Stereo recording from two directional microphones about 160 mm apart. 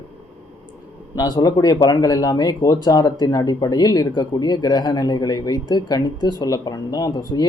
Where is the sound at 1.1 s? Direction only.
25° left (ahead or behind).